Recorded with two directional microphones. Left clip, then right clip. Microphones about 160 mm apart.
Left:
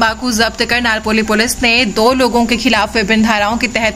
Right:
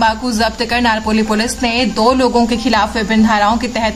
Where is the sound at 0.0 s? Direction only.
20° left (ahead or behind).